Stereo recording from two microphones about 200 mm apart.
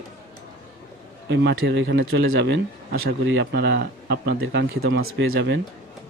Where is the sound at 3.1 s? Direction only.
60° right (ahead or behind).